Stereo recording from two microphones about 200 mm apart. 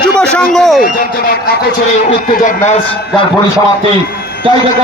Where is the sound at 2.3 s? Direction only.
40° left (ahead or behind).